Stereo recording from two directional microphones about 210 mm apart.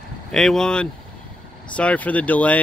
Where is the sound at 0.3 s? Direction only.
Centre (ahead or behind).